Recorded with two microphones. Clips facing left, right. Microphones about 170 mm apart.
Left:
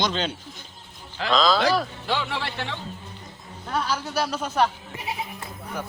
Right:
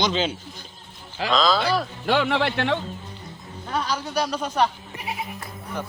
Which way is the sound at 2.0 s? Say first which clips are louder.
Right 7 dB; 60° right (ahead or behind).